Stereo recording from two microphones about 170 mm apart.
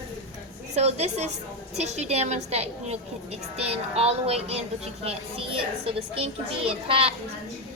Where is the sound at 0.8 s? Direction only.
40° right (ahead or behind).